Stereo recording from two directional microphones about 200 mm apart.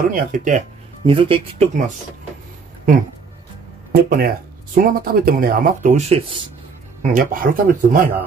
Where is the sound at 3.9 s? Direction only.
50° right (ahead or behind); by 6.5 s 25° right (ahead or behind).